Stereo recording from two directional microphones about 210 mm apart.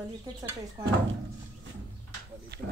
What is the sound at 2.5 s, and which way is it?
Speech, 50° right (ahead or behind).